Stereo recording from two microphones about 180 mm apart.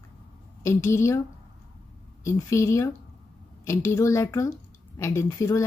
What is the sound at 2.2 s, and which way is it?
A woman's voice, 15° left (ahead or behind).